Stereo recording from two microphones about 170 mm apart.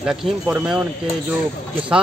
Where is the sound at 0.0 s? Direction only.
5° right (ahead or behind).